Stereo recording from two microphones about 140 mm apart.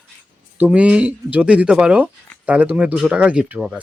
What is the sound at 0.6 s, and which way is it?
Speech, 10° right (ahead or behind).